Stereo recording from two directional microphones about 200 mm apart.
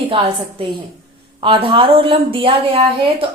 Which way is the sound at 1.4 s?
25° right (ahead or behind).